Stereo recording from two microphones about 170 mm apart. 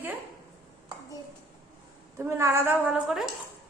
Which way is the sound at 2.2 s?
15° right (ahead or behind).